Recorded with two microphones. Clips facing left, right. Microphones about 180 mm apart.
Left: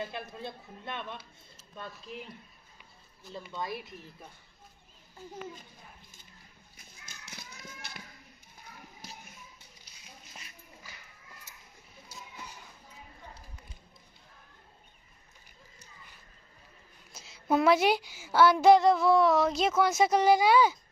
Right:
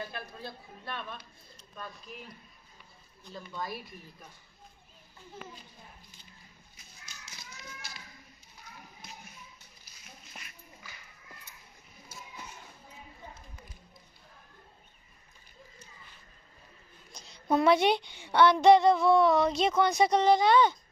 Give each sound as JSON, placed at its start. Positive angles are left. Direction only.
{"t": 0.0, "sound": "speech", "side_deg": 20}
{"t": 3.3, "sound": "speech", "side_deg": 25}
{"t": 6.8, "sound": "horse", "side_deg": 55}
{"t": 17.1, "sound": "a woman's voice", "side_deg": 5}